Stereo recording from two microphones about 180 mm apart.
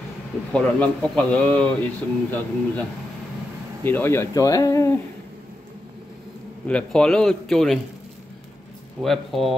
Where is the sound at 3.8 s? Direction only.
10° left (ahead or behind).